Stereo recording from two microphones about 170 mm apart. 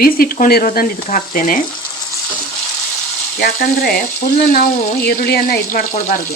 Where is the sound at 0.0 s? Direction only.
60° left (ahead or behind).